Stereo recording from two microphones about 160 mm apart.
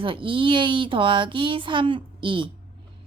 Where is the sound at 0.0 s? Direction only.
30° right (ahead or behind).